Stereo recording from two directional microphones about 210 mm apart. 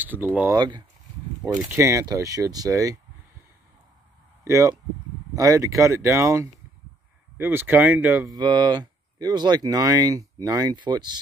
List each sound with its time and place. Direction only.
0.0 s speech: 10° right (ahead or behind)
0.6 s speech: 20° right (ahead or behind)
4.5 s speech: 15° right (ahead or behind)